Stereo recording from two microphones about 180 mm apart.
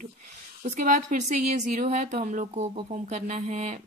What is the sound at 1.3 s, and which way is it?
Speech, 40° right (ahead or behind).